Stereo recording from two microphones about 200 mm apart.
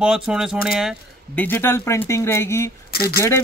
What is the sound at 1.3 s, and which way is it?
Speech, 10° left (ahead or behind).